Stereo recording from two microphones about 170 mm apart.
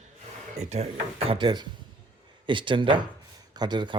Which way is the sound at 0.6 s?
40° right (ahead or behind).